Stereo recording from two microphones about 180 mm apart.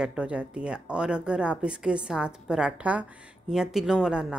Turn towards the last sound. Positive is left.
turn(degrees=-5)  # may be behind; listen again after turning